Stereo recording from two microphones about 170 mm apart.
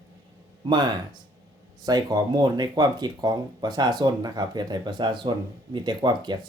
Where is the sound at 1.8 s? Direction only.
25° right (ahead or behind).